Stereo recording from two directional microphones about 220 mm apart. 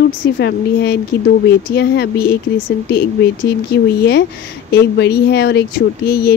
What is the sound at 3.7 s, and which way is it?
Speech, 50° left (ahead or behind).